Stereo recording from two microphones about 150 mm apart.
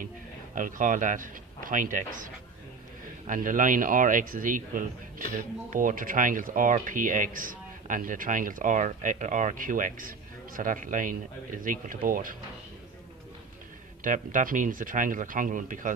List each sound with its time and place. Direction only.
0.6 s a man's voice: 60° right (ahead or behind)
3.3 s a man's voice: 60° right (ahead or behind)
14.0 s a man's voice: 60° right (ahead or behind)